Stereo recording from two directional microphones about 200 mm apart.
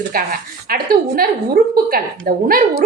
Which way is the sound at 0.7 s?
50° right (ahead or behind).